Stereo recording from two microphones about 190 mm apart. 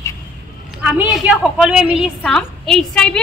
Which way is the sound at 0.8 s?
5° right (ahead or behind).